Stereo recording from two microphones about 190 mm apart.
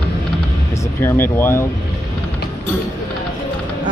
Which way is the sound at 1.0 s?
15° left (ahead or behind).